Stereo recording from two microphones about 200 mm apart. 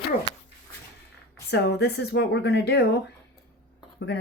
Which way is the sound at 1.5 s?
55° left (ahead or behind).